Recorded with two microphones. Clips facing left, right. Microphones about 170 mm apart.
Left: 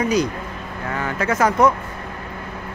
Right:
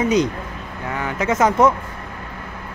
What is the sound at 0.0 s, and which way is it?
Speech, 20° right (ahead or behind).